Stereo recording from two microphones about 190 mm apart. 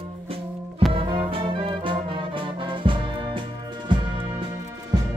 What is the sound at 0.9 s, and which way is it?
Music, 25° right (ahead or behind).